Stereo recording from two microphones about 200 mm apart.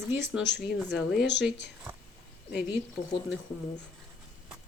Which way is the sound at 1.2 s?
60° left (ahead or behind).